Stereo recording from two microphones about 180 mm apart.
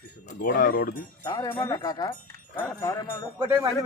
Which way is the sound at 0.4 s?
55° left (ahead or behind).